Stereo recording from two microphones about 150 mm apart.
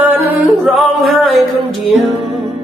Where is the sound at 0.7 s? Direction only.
Centre (ahead or behind).